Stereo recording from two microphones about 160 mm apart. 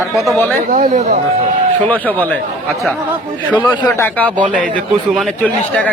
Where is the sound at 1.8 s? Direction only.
10° left (ahead or behind).